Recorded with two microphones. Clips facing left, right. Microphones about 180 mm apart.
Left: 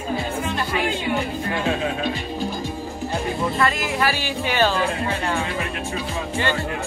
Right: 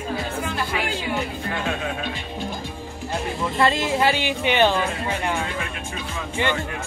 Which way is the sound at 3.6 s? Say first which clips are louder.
Right 5 dB; 25° right (ahead or behind).